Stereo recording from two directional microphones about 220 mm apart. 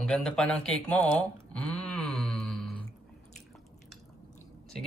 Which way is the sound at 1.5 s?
5° left (ahead or behind).